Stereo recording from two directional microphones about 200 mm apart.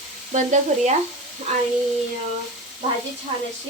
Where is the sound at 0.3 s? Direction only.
35° right (ahead or behind).